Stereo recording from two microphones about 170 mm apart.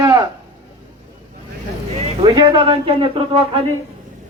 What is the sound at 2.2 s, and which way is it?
Speech, 30° right (ahead or behind).